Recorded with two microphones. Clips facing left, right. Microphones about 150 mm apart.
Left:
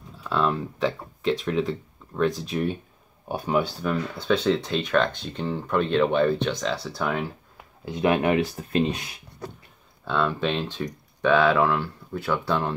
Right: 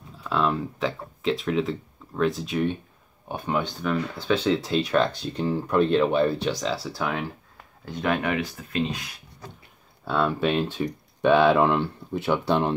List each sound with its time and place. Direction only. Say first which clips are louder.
0.2 s speech: even; centre (ahead or behind)
7.8 s speech: left 4 dB; 15° left (ahead or behind)
10.0 s speech: right 1 dB; 10° right (ahead or behind)